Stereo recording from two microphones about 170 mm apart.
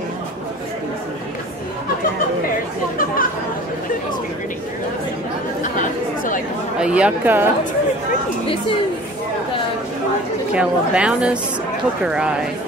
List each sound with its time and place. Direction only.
5.6 s chatter: 50° left (ahead or behind)
6.8 s speech: 5° right (ahead or behind)
10.5 s a woman's voice: 5° right (ahead or behind)